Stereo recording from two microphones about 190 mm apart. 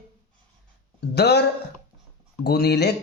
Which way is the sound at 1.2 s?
60° left (ahead or behind).